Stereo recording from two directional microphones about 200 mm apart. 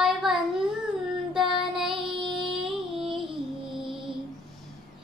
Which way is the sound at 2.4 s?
Centre (ahead or behind).